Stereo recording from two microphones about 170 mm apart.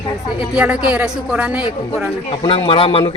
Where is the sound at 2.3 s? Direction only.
30° left (ahead or behind).